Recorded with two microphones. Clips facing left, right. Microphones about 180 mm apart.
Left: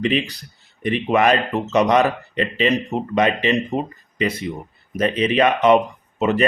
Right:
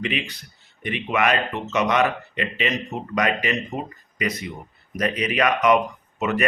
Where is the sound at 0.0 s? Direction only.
35° left (ahead or behind).